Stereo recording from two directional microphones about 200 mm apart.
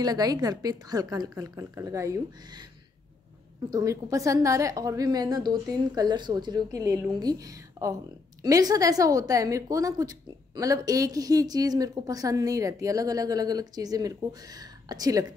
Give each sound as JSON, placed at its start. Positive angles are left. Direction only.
{"t": 0.0, "sound": "a woman's voice", "side_deg": -20}
{"t": 3.7, "sound": "a woman's voice", "side_deg": -15}